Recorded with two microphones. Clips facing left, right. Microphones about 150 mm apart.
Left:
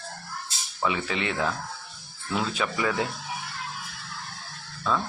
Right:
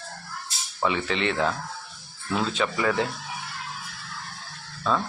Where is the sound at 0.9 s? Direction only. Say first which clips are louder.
Right 2 dB; 10° left (ahead or behind).